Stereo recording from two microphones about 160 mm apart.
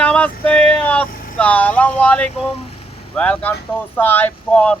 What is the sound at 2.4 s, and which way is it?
Speech, 40° left (ahead or behind).